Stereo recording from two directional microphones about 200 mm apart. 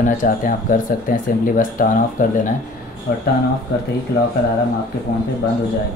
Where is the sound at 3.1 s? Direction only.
60° left (ahead or behind).